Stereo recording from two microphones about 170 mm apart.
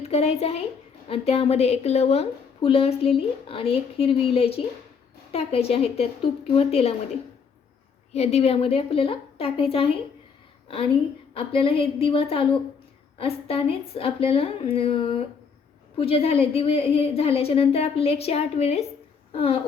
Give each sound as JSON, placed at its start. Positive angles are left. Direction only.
{"t": 0.0, "sound": "a woman's voice", "side_deg": 40}
{"t": 8.1, "sound": "a woman's voice", "side_deg": 40}
{"t": 11.3, "sound": "a woman's voice", "side_deg": 35}